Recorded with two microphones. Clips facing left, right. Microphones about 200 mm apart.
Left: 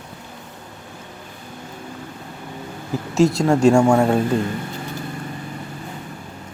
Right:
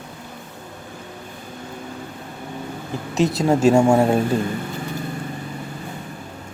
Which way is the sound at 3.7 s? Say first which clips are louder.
Right 1 dB; 20° right (ahead or behind).